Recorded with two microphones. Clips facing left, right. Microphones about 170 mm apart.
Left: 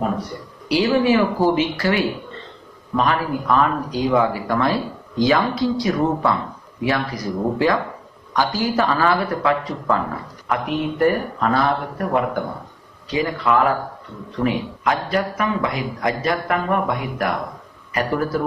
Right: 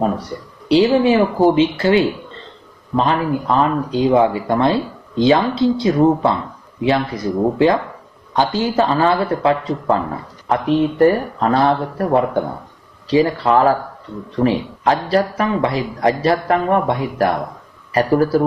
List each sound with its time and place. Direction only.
0.7 s speech: 25° right (ahead or behind)